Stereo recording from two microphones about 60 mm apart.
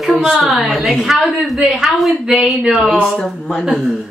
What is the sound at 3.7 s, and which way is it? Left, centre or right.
Speech, centre.